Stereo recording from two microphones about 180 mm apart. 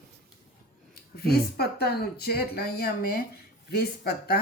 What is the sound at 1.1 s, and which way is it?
Speech, 60° left (ahead or behind).